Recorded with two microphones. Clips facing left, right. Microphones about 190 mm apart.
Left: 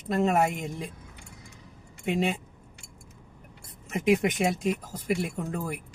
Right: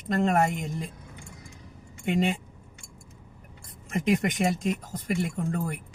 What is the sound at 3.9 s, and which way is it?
Speech, 5° left (ahead or behind).